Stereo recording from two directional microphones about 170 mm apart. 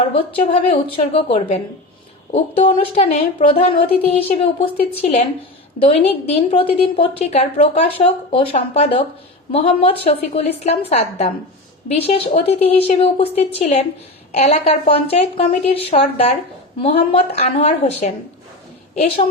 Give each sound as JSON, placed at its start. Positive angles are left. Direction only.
{"t": 0.3, "sound": "a woman's voice", "side_deg": 35}